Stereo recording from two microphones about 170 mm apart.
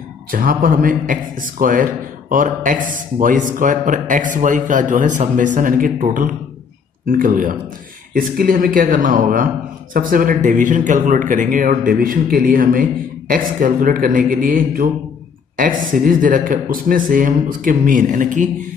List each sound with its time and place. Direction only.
0.3 s a man's voice: 55° right (ahead or behind)